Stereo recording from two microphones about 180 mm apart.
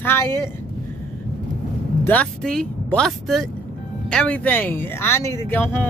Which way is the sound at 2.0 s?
5° left (ahead or behind).